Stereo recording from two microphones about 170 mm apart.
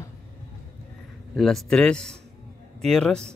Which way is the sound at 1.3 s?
Centre (ahead or behind).